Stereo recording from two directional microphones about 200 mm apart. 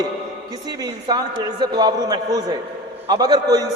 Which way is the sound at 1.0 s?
20° right (ahead or behind).